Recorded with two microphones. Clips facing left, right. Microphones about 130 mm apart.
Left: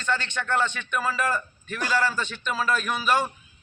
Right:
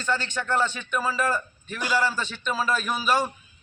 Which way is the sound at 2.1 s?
30° right (ahead or behind).